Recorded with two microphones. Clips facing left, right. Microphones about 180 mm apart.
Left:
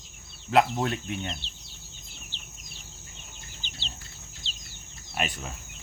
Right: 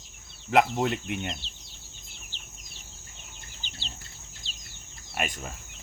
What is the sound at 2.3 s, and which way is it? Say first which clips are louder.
Chicken: left 2 dB; 40° right (ahead or behind).